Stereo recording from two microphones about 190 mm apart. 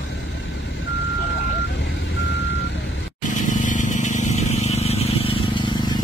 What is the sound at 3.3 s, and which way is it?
Vehicle, 40° left (ahead or behind).